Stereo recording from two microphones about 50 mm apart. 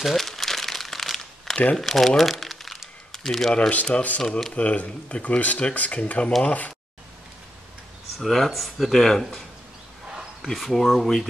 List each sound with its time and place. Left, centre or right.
0.0 s crumpling: centre
3.9 s speech: left
8.2 s speech: centre
10.1 s speech: centre